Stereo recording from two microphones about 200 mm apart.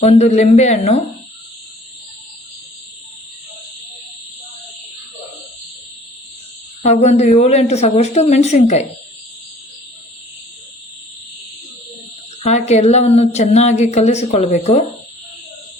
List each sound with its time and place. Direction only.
0.0 s speech: 35° left (ahead or behind)
6.8 s speech: 35° left (ahead or behind)
12.4 s speech: 35° left (ahead or behind)